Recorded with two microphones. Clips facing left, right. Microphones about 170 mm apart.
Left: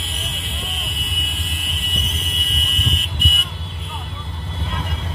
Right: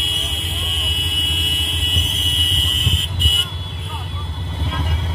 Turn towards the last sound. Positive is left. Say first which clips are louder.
# even
turn(degrees=-30)  # may be behind; listen again after turning